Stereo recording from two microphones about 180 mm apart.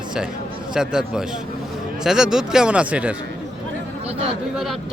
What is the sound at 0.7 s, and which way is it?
Speech, 5° right (ahead or behind).